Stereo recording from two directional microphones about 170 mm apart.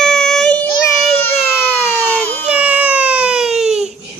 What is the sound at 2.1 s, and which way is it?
Baby cry, 10° left (ahead or behind).